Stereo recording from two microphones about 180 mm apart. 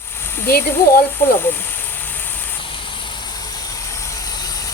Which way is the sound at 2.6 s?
30° left (ahead or behind).